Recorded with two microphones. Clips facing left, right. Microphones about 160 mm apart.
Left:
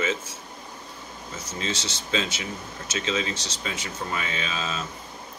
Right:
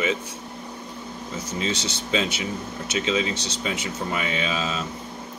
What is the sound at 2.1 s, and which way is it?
Speech, 20° right (ahead or behind).